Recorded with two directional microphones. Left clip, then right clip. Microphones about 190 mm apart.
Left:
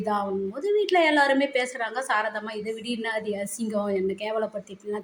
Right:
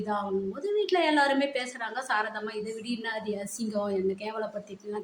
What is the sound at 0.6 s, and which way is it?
Speech, 15° left (ahead or behind).